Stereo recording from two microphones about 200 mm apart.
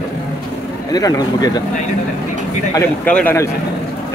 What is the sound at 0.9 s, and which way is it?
Speech, 20° left (ahead or behind).